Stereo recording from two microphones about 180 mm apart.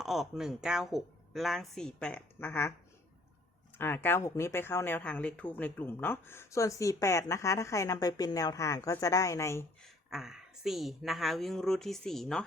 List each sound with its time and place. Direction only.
0.0 s speech: centre (ahead or behind)
3.8 s speech: 10° left (ahead or behind)
10.1 s speech: centre (ahead or behind)